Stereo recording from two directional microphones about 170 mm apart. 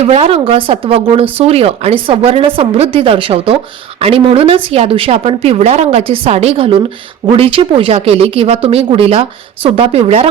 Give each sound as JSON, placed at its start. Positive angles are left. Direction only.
{"t": 0.0, "sound": "a woman's voice", "side_deg": -35}